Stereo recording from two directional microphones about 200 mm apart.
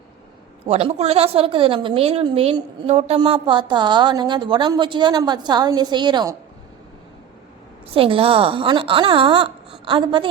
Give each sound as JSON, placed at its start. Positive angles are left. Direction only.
{"t": 0.7, "sound": "a woman's voice", "side_deg": -30}
{"t": 7.9, "sound": "a woman's voice", "side_deg": -25}